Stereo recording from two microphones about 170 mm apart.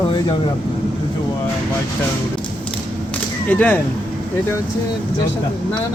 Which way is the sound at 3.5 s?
10° left (ahead or behind).